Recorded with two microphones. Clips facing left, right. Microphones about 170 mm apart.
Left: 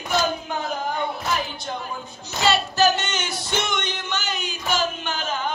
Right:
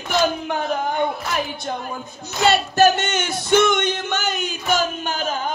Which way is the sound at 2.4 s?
50° right (ahead or behind).